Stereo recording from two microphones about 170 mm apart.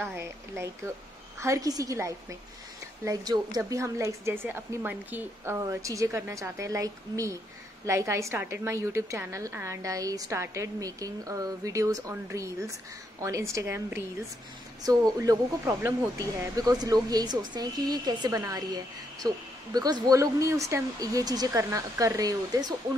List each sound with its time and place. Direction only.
0.0 s a woman's voice: 15° right (ahead or behind)